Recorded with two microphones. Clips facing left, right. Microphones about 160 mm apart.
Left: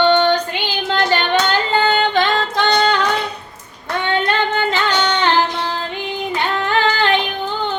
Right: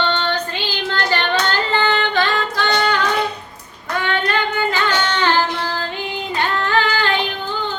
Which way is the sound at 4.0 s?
25° left (ahead or behind).